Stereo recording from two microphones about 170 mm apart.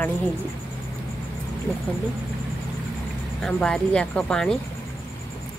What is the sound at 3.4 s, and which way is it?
Speech, 5° left (ahead or behind).